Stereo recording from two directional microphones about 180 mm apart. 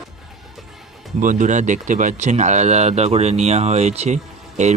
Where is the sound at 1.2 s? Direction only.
45° right (ahead or behind).